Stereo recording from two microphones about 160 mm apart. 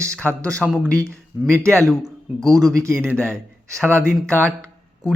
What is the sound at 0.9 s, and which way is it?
Speech, 15° right (ahead or behind).